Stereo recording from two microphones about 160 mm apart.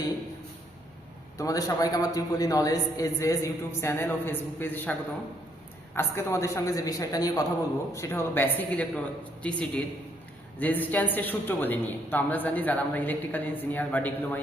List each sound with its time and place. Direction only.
1.4 s a man's voice: 20° left (ahead or behind)